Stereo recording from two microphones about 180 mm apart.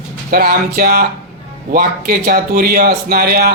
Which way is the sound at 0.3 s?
55° right (ahead or behind).